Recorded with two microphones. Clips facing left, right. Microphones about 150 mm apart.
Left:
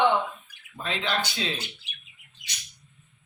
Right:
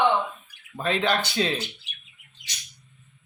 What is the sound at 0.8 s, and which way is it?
Speech, 50° right (ahead or behind).